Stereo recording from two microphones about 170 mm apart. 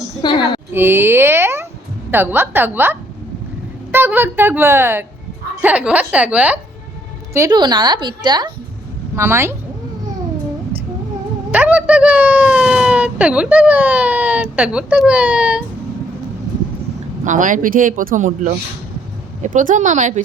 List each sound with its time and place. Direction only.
0.2 s a woman's voice: 25° left (ahead or behind)
0.7 s speech: 15° right (ahead or behind)
7.3 s a woman's voice: 20° right (ahead or behind)
9.1 s speech: 15° right (ahead or behind)
11.5 s speech: 10° right (ahead or behind)
17.2 s speech: 50° right (ahead or behind)